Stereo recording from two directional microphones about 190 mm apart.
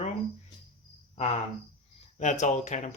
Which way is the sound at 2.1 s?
40° left (ahead or behind).